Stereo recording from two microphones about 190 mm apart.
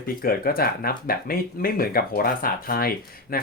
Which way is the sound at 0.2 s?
50° left (ahead or behind).